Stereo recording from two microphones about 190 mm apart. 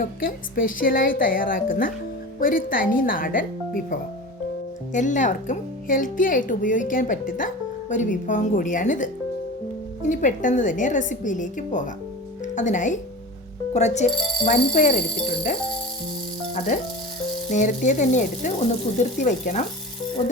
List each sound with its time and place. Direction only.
0.0 s speech: 45° left (ahead or behind)
4.9 s speech: 40° left (ahead or behind)
10.1 s speech: 45° left (ahead or behind)
16.7 s speech: 40° left (ahead or behind)